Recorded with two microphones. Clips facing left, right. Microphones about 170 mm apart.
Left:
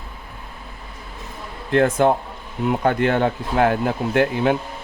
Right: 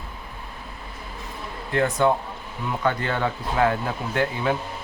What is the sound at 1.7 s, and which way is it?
Speech, 60° left (ahead or behind).